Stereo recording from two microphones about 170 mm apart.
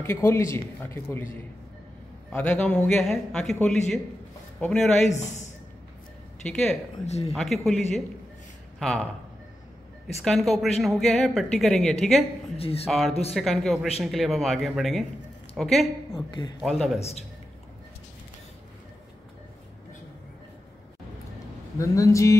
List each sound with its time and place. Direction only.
0.0 s a man's voice: 15° left (ahead or behind)
2.3 s a woman's voice: 5° left (ahead or behind)
6.4 s a woman's voice: 5° left (ahead or behind)
7.1 s speech: 40° left (ahead or behind)
7.3 s a woman's voice: centre (ahead or behind)
10.2 s a woman's voice: centre (ahead or behind)
12.5 s speech: 35° left (ahead or behind)
13.3 s a woman's voice: centre (ahead or behind)
21.7 s a man's voice: 20° left (ahead or behind)